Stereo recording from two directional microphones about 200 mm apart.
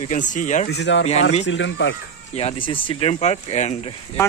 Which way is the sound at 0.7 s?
60° left (ahead or behind).